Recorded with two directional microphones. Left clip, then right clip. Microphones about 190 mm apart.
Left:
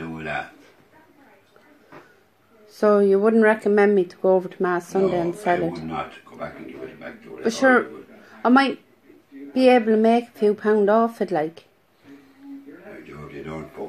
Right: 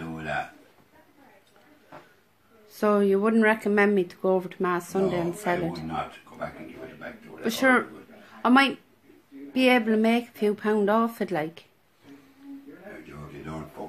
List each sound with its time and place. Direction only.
2.7 s speech: 25° right (ahead or behind)
7.4 s speech: 30° right (ahead or behind)
8.3 s a sound: 30° right (ahead or behind)
9.5 s speech: 25° right (ahead or behind)